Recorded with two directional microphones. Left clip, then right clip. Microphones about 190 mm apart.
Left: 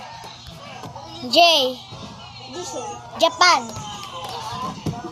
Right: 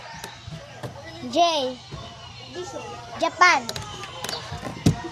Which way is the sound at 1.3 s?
25° left (ahead or behind).